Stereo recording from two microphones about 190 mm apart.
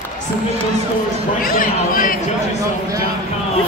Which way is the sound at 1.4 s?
50° left (ahead or behind).